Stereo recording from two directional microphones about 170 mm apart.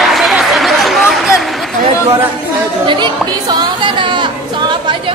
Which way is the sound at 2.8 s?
30° right (ahead or behind).